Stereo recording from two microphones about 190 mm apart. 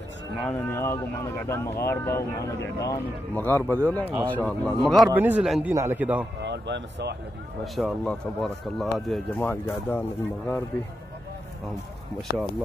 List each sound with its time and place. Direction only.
0.5 s a man's voice: 15° left (ahead or behind); by 6.2 s 10° right (ahead or behind)
6.4 s speech: 65° right (ahead or behind)
7.6 s speech: centre (ahead or behind)